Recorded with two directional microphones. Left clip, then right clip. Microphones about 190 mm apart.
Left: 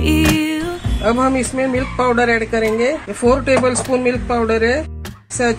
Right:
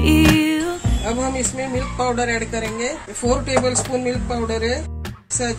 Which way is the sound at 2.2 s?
45° left (ahead or behind).